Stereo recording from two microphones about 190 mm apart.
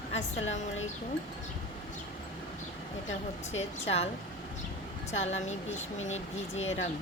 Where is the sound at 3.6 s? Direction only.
35° left (ahead or behind).